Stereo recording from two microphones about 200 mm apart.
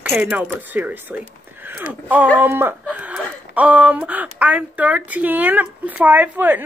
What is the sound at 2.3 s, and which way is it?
Speech, 10° right (ahead or behind).